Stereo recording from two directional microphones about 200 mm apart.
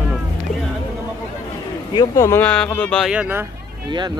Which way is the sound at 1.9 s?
20° left (ahead or behind).